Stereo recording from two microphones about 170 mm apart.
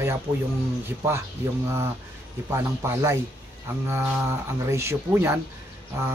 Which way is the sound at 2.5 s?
15° right (ahead or behind).